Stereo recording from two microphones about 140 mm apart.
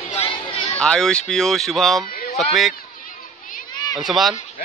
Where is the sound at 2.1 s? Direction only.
90° left.